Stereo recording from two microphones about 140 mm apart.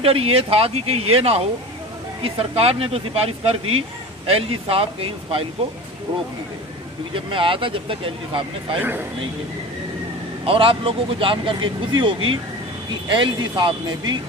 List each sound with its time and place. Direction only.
0.0 s speech: 45° right (ahead or behind)
7.1 s speech: 40° right (ahead or behind)
8.8 s a man's voice: 15° right (ahead or behind)
10.4 s speech: 40° right (ahead or behind)